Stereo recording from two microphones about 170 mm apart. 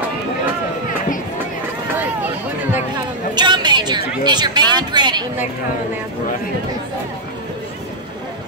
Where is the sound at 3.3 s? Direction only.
25° right (ahead or behind).